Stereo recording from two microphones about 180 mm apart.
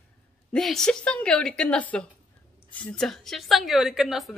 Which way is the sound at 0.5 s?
Centre (ahead or behind).